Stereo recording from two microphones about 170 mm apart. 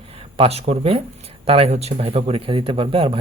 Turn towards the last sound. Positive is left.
turn(degrees=-30)  # may be behind; listen again after turning